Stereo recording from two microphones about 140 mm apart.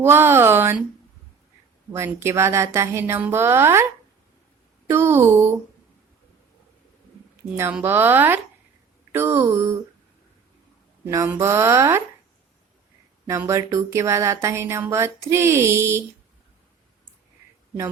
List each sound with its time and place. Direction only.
0.0 s speech: 15° right (ahead or behind)
1.9 s a woman's voice: 20° right (ahead or behind)
4.9 s speech: 15° right (ahead or behind)
7.7 s speech: 15° right (ahead or behind)
11.0 s a woman's voice: 15° right (ahead or behind)
13.2 s a woman's voice: 20° right (ahead or behind)